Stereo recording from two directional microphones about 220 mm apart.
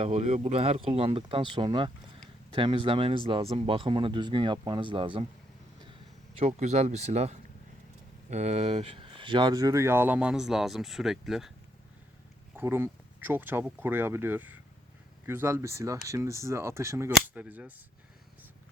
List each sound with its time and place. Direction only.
0.0 s speech: 30° right (ahead or behind); by 11.5 s centre (ahead or behind)
12.5 s speech: 10° right (ahead or behind)